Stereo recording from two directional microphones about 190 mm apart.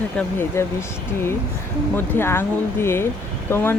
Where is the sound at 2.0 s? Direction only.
10° left (ahead or behind).